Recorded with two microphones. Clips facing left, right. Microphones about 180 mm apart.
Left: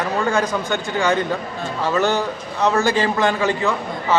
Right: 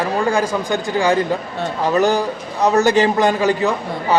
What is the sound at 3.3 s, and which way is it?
Speech, 40° right (ahead or behind).